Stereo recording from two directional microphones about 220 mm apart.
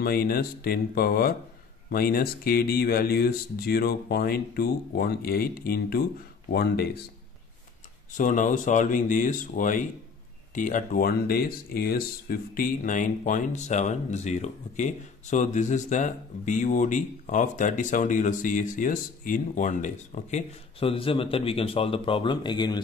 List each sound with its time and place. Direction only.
0.0 s speech: 45° left (ahead or behind)
8.2 s speech: 35° left (ahead or behind); by 22.8 s 20° left (ahead or behind)